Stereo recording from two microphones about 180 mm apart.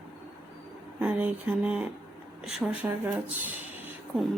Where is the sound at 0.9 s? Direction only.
10° right (ahead or behind).